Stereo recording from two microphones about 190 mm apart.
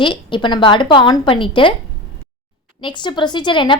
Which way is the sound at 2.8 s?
25° left (ahead or behind).